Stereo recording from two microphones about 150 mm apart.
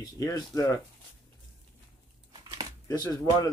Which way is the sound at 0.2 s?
20° left (ahead or behind).